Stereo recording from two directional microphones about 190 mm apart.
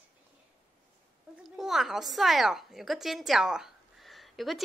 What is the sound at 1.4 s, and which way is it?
A woman's voice, centre (ahead or behind).